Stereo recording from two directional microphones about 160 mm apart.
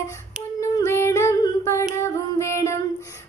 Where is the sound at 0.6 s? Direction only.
15° left (ahead or behind).